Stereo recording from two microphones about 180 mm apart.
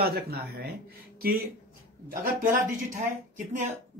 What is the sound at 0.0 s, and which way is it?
Speech, 60° right (ahead or behind).